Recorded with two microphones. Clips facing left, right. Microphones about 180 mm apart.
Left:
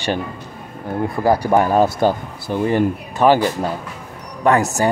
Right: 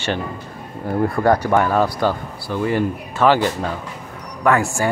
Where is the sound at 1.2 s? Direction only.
10° left (ahead or behind).